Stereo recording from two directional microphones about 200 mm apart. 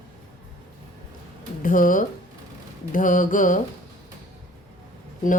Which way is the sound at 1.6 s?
45° left (ahead or behind).